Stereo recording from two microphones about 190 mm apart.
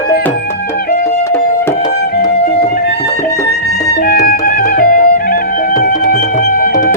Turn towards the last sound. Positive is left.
turn(degrees=50)  # may be behind; listen again after turning